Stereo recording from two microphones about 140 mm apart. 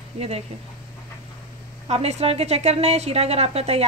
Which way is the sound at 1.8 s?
50° right (ahead or behind).